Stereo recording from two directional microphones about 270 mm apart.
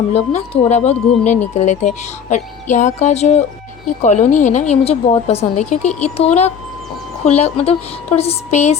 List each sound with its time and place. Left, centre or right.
0.1 s a woman's voice: left